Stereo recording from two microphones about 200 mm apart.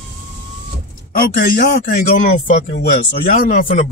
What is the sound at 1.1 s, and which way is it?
A man's voice, 45° left (ahead or behind).